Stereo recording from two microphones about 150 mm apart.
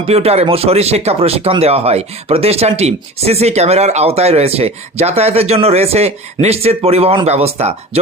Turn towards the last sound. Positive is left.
turn(degrees=-40)  # may be behind; listen again after turning